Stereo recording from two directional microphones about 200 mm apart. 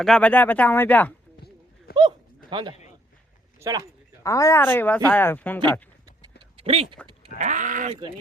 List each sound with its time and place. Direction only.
0.0 s speech: 5° left (ahead or behind)
1.9 s goat: 50° left (ahead or behind)
2.5 s a man's voice: 25° right (ahead or behind)
4.2 s speech: 15° left (ahead or behind)
6.6 s speech: 30° right (ahead or behind)
7.3 s speech: 40° right (ahead or behind)